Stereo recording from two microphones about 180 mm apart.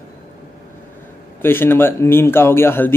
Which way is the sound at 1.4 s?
10° left (ahead or behind).